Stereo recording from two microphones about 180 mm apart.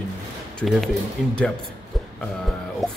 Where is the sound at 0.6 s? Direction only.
Centre (ahead or behind).